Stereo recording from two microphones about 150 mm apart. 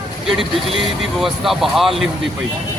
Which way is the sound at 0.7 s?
Centre (ahead or behind).